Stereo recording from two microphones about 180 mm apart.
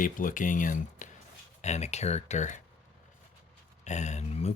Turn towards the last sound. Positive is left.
turn(degrees=35)  # may be behind; listen again after turning